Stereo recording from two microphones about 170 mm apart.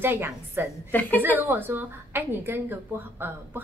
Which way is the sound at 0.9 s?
10° left (ahead or behind).